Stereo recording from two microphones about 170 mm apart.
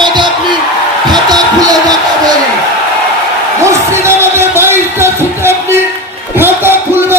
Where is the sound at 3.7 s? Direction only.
15° right (ahead or behind).